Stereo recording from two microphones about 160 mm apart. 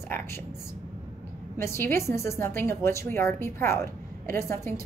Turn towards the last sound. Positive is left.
turn(degrees=15)  # may be behind; listen again after turning